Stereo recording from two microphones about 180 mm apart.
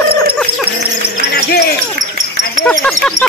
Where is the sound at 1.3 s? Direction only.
65° left (ahead or behind).